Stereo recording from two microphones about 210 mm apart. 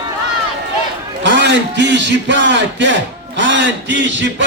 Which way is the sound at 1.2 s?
55° right (ahead or behind).